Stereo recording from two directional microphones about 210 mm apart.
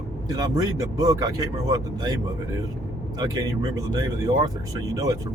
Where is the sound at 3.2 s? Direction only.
20° right (ahead or behind).